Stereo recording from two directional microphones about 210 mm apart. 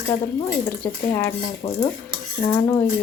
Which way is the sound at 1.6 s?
20° left (ahead or behind).